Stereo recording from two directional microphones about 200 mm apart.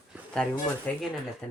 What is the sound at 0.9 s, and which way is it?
Speech, 5° left (ahead or behind).